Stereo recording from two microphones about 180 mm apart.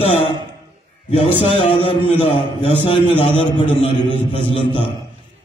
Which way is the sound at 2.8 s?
30° left (ahead or behind).